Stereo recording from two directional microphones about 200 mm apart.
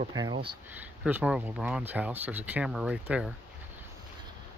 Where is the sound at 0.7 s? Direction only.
10° right (ahead or behind).